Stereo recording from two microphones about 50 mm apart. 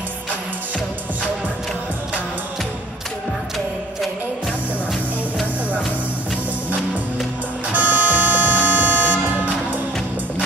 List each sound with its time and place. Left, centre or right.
7.7 s music: right